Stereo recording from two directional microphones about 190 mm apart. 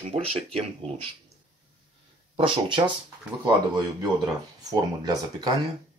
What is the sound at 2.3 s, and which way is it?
Speech, 30° right (ahead or behind).